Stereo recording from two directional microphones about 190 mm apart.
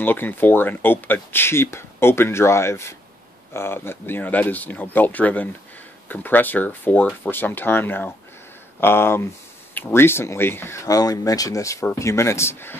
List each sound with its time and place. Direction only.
0.0 s speech: 10° left (ahead or behind)